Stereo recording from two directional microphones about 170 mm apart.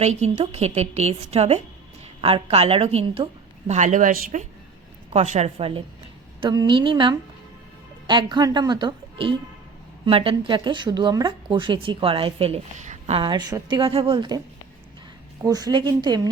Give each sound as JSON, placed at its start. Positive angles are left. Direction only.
{"t": 0.0, "sound": "a woman's voice", "side_deg": -40}
{"t": 3.7, "sound": "a woman's voice", "side_deg": -45}